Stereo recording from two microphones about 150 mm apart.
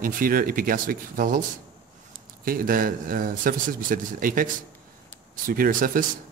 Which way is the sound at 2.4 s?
70° right (ahead or behind).